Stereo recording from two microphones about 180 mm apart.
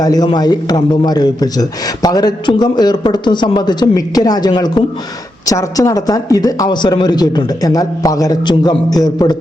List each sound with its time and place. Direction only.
0.0 s a man's voice: 20° left (ahead or behind)